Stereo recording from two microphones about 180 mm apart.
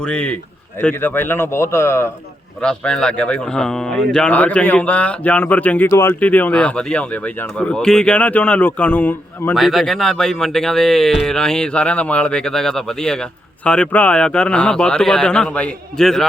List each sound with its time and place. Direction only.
0.0 s a man's voice: 5° left (ahead or behind)
2.6 s a man's voice: 5° left (ahead or behind)
9.6 s speech: centre (ahead or behind)